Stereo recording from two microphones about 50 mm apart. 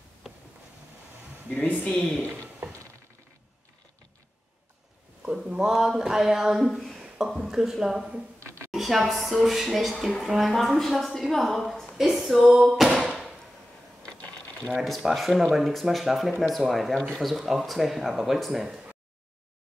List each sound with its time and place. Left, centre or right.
1.9 s speech: centre
2.6 s a sound: right
5.2 s speech: centre
6.6 s a woman's voice: centre
8.4 s a sound: right
8.7 s a woman's voice: centre
11.9 s a sound: centre
14.0 s mechanisms: centre
15.0 s a woman's voice: centre